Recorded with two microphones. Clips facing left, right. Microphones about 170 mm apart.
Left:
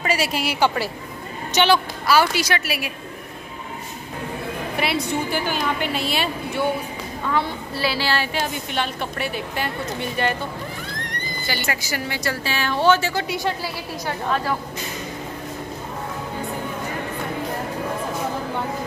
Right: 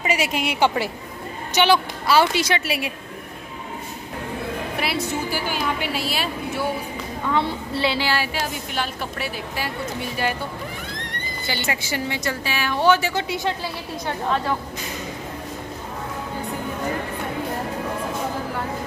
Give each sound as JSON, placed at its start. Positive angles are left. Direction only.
{"t": 0.0, "sound": "a woman's voice", "side_deg": -15}
{"t": 2.0, "sound": "a woman's voice", "side_deg": -25}
{"t": 4.7, "sound": "a woman's voice", "side_deg": -5}
{"t": 7.3, "sound": "a woman's voice", "side_deg": -25}
{"t": 8.1, "sound": "a woman's voice", "side_deg": -5}
{"t": 11.1, "sound": "a woman's voice", "side_deg": -25}